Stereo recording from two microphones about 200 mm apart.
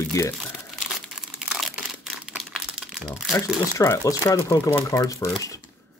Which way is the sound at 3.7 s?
15° left (ahead or behind).